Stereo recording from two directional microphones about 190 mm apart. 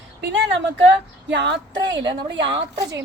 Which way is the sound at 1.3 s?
70° right (ahead or behind).